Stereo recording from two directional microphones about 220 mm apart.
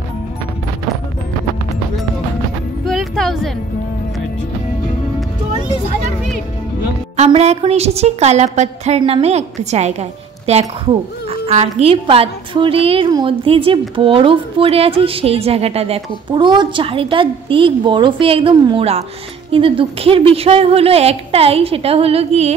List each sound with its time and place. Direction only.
2.8 s music: centre (ahead or behind)
7.2 s a woman's voice: 30° right (ahead or behind)